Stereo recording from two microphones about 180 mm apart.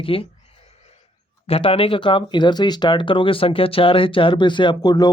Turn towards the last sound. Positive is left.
turn(degrees=20)  # may be behind; listen again after turning